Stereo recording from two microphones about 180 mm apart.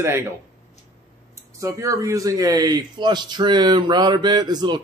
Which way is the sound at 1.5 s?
15° right (ahead or behind).